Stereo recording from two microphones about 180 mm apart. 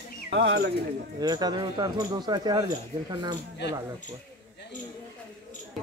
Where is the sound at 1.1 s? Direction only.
20° right (ahead or behind).